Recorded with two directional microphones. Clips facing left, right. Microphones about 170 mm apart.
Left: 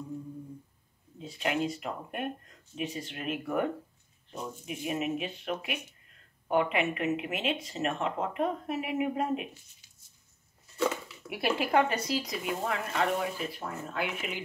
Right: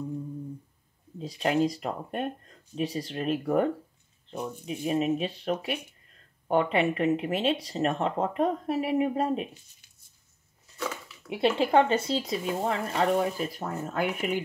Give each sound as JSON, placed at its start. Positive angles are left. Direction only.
{"t": 1.2, "sound": "speech", "side_deg": -35}
{"t": 11.2, "sound": "speech", "side_deg": -25}